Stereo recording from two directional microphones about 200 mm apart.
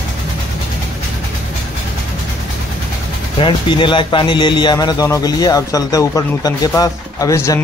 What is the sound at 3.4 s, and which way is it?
Speech, 25° left (ahead or behind).